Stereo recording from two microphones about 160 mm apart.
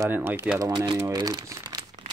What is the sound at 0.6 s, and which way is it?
Speech, 25° right (ahead or behind).